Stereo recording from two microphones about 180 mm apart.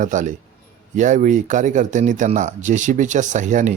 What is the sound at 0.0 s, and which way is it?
Speech, 45° right (ahead or behind).